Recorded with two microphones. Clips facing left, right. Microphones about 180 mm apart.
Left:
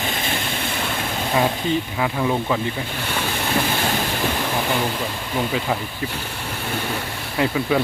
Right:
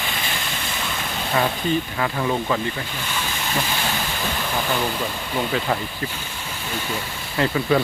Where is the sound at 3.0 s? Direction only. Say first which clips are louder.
Left 5 dB; 60° left (ahead or behind).